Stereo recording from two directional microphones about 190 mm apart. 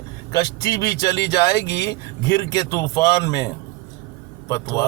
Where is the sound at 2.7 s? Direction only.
15° left (ahead or behind).